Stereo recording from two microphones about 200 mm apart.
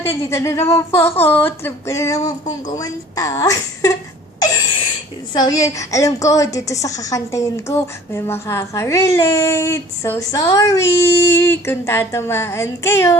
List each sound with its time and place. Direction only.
0.0 s a woman's voice: 15° left (ahead or behind)
4.4 s a sound: 20° left (ahead or behind)
5.3 s a woman's voice: 20° left (ahead or behind)